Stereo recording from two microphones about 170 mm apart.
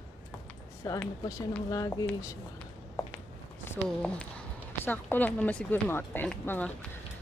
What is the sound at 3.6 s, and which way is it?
Speech, 10° left (ahead or behind).